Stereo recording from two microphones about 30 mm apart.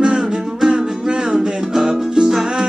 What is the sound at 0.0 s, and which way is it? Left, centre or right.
Music, right.